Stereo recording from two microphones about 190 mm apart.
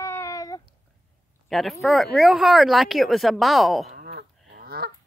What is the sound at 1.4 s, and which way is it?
Speech, centre (ahead or behind).